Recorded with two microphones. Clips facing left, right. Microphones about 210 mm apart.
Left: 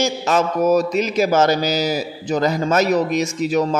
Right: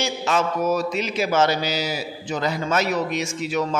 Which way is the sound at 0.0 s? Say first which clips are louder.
Left 4 dB; 40° left (ahead or behind).